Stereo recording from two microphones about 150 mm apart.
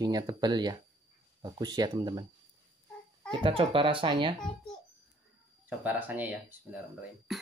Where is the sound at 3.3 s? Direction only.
35° right (ahead or behind).